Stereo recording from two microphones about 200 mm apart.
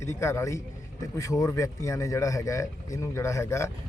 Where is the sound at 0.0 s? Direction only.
15° left (ahead or behind).